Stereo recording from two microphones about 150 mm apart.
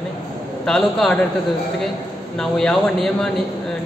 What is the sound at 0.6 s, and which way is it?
Speech, 5° left (ahead or behind).